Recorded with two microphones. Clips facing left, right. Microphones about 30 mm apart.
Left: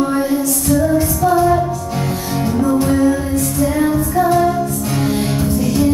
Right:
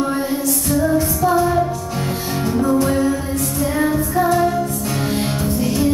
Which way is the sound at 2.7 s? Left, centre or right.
Centre.